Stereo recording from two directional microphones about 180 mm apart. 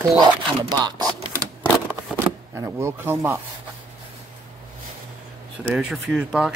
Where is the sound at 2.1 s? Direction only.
15° right (ahead or behind).